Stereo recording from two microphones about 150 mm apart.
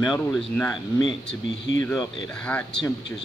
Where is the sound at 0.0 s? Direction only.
5° left (ahead or behind).